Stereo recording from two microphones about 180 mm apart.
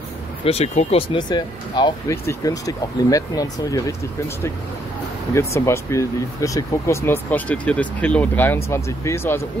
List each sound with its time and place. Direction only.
0.5 s speech: 35° left (ahead or behind)
5.3 s speech: 15° left (ahead or behind)